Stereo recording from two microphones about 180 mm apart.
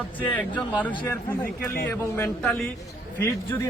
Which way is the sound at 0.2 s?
10° left (ahead or behind).